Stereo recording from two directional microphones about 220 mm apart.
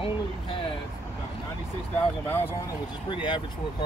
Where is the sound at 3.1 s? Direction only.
20° left (ahead or behind).